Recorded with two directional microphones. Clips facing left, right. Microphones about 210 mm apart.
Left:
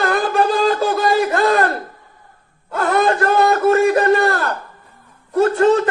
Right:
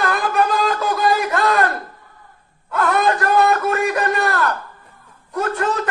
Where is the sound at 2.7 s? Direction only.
30° left (ahead or behind).